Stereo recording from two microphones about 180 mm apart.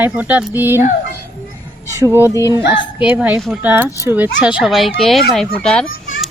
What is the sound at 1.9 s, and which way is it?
Speech, 15° right (ahead or behind).